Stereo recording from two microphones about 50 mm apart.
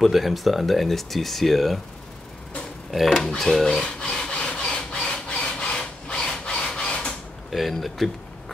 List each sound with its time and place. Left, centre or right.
0.0 s speech: centre
2.9 s speech: centre
3.8 s sawing: centre
7.5 s speech: centre